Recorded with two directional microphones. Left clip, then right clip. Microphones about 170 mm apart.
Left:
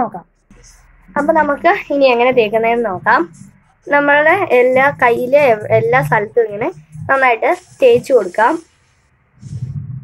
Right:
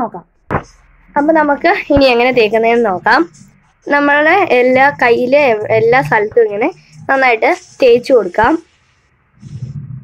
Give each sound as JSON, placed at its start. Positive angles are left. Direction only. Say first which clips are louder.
{"t": 1.1, "sound": "a woman's voice", "louder": "right 2 dB", "side_deg": -40}